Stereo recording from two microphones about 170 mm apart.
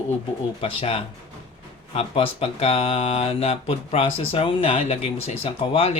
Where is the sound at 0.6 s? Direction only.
35° left (ahead or behind).